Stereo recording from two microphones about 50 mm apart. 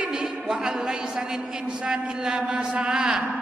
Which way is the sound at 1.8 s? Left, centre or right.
Centre.